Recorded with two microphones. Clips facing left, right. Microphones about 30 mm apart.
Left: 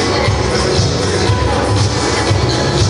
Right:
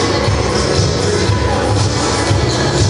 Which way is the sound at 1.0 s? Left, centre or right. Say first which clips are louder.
Even; centre.